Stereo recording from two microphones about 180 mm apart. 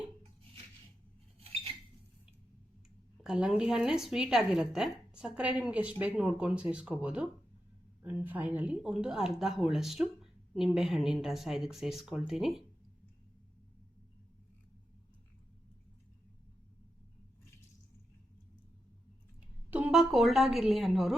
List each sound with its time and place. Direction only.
3.2 s a woman's voice: 5° right (ahead or behind)
19.7 s a woman's voice: 5° right (ahead or behind)